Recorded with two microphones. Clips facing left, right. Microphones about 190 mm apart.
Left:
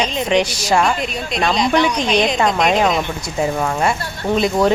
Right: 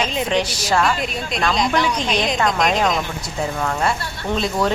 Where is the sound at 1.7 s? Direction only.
20° left (ahead or behind).